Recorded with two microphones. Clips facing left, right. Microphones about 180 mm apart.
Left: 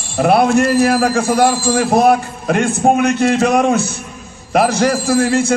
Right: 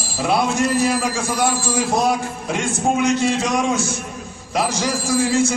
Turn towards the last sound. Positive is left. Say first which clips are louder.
# left 4 dB
turn(degrees=60)  # may be behind; listen again after turning